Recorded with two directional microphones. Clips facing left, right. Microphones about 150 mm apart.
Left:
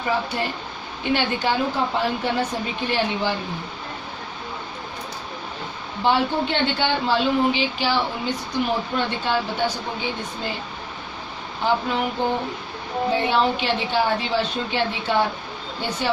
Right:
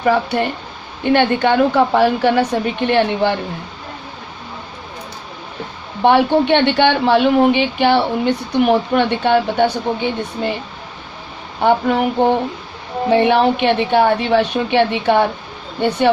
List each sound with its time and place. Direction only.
0.0 s speech: 70° right (ahead or behind)
1.0 s speech: 55° right (ahead or behind)
6.0 s speech: 65° right (ahead or behind)
11.6 s speech: 60° right (ahead or behind)